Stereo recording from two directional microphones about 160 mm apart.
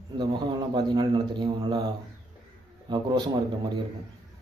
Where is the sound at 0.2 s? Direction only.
25° right (ahead or behind).